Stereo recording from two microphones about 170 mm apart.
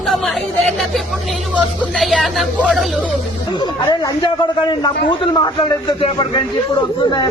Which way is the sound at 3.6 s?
25° left (ahead or behind).